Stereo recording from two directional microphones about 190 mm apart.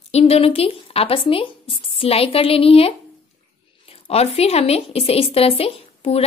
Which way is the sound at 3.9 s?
30° left (ahead or behind).